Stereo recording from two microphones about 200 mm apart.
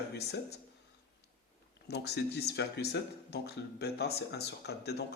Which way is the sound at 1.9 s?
55° left (ahead or behind).